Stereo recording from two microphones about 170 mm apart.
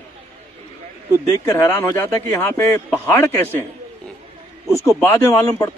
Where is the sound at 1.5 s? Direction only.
15° left (ahead or behind).